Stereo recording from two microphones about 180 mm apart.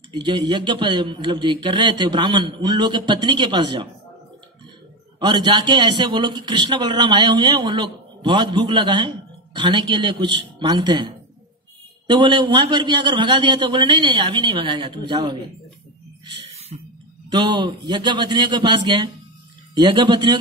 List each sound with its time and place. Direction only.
0.1 s a man's voice: 25° right (ahead or behind)
5.2 s a man's voice: 25° right (ahead or behind)
16.3 s a sound: 35° right (ahead or behind)
17.3 s a man's voice: 25° right (ahead or behind)